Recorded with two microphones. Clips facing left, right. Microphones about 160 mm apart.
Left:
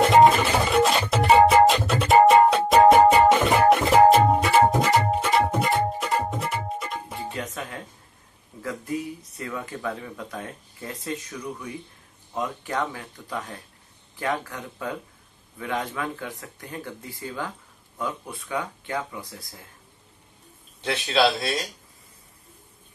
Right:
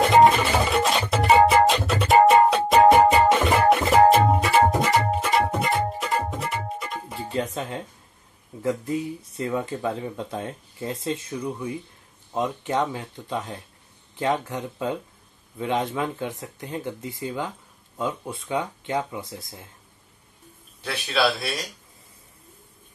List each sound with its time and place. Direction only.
0.0 s music: centre (ahead or behind)
7.3 s music: 25° right (ahead or behind)
8.6 s speech: 25° right (ahead or behind)
20.8 s speech: 20° left (ahead or behind)